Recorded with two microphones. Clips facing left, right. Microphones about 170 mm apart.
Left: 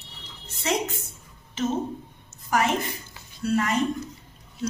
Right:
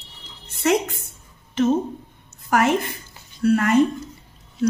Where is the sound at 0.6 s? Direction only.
55° right (ahead or behind).